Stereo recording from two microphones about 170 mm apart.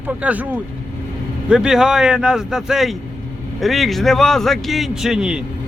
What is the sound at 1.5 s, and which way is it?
Speech, 5° right (ahead or behind).